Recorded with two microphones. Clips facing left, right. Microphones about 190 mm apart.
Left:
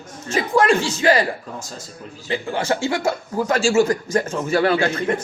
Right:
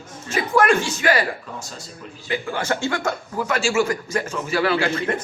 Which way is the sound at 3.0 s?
40° left (ahead or behind).